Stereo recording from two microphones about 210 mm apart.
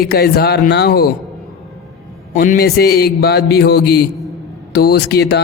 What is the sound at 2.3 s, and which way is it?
A man's voice, 40° left (ahead or behind).